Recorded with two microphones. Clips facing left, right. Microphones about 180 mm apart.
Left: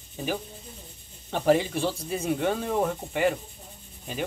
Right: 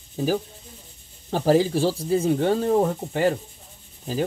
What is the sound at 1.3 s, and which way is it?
Speech, 35° right (ahead or behind).